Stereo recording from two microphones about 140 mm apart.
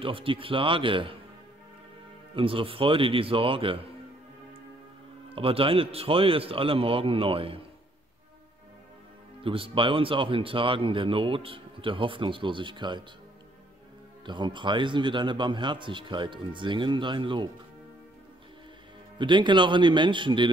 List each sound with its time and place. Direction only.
0.0 s speech: 40° right (ahead or behind)
2.3 s speech: 40° right (ahead or behind)
5.3 s speech: 40° right (ahead or behind)
9.4 s speech: 40° right (ahead or behind)
14.2 s speech: 35° right (ahead or behind)
19.1 s speech: 35° right (ahead or behind)